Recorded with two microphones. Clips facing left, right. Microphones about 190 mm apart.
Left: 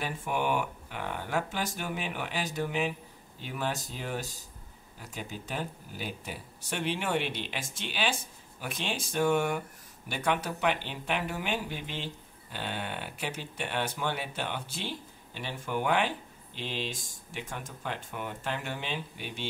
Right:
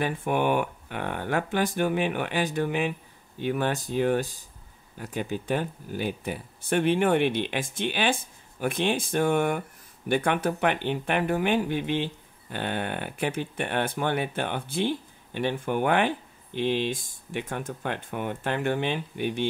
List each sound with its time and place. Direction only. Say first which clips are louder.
0.0 s speech: right 6 dB; 55° right (ahead or behind)